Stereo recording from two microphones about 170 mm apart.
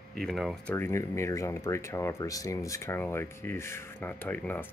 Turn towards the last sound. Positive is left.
turn(degrees=10)  # may be behind; listen again after turning